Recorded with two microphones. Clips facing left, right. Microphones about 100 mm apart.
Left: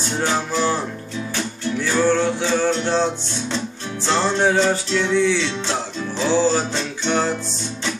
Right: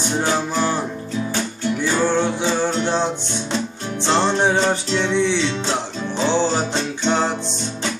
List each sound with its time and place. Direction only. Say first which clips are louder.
0.2 s music: left 1 dB; 20° right (ahead or behind)